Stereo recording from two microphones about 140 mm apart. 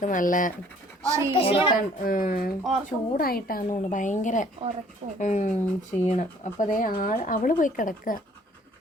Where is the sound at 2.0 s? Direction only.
90° left.